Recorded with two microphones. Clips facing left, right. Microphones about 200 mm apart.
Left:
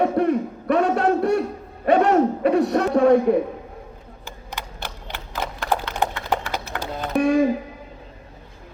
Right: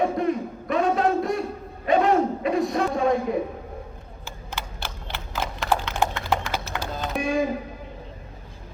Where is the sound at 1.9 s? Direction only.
65° left (ahead or behind).